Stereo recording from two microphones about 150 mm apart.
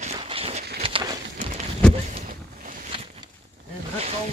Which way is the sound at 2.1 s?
55° right (ahead or behind).